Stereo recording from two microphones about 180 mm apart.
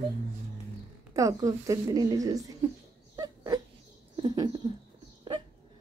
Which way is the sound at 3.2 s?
20° right (ahead or behind).